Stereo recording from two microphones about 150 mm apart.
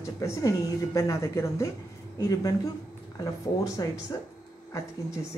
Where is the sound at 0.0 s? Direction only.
20° left (ahead or behind).